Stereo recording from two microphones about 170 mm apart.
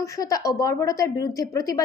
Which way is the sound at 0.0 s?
20° left (ahead or behind).